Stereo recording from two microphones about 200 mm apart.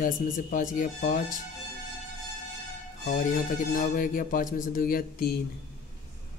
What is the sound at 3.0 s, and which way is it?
Speech, 45° left (ahead or behind).